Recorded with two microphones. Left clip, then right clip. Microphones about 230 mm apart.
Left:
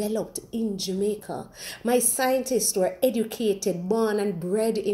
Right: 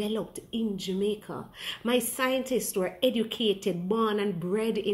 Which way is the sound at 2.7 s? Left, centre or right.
Centre.